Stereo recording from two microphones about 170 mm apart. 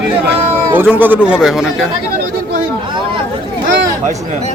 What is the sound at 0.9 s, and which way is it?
Speech, 10° right (ahead or behind).